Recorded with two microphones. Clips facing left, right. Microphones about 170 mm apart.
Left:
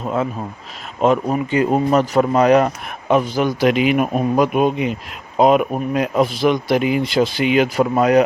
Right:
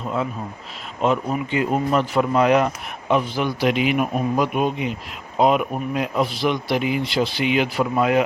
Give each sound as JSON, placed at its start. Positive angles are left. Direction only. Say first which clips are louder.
{"t": 1.0, "sound": "a man's voice", "louder": "left 5 dB", "side_deg": 45}